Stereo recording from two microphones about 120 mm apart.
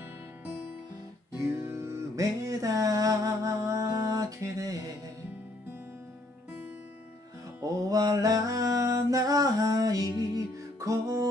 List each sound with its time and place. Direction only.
1.6 s music: 25° right (ahead or behind)
7.6 s mantra: 30° right (ahead or behind)